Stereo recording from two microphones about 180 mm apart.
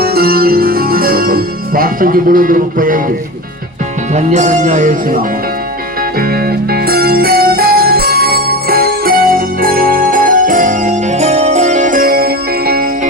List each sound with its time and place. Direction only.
0.0 s music: 60° right (ahead or behind)
4.1 s speech: 40° right (ahead or behind)
6.1 s music: 55° right (ahead or behind)